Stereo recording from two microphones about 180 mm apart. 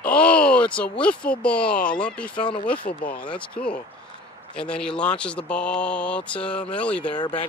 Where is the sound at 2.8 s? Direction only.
50° left (ahead or behind).